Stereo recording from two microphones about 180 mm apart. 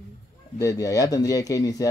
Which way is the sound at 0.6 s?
20° left (ahead or behind).